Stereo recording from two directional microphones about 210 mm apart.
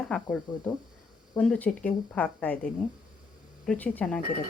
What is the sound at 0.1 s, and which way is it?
Speech, 5° left (ahead or behind).